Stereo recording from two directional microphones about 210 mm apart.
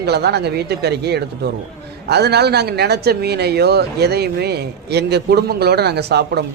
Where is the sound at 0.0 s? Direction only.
50° right (ahead or behind).